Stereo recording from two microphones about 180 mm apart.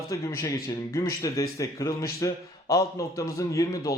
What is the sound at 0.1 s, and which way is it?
A man's voice, 15° left (ahead or behind).